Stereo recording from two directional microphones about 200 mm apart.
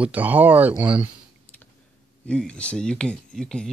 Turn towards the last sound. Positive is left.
turn(degrees=5)  # may be behind; listen again after turning